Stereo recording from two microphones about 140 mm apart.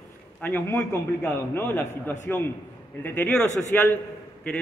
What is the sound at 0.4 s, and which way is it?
A man's voice, 15° left (ahead or behind).